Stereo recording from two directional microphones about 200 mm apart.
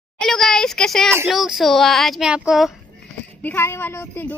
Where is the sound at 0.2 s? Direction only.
Centre (ahead or behind).